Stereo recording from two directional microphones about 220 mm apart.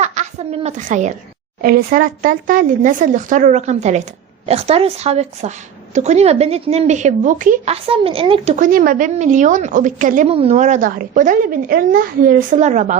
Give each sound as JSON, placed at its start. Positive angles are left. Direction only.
{"t": 0.0, "sound": "a woman's voice", "side_deg": -30}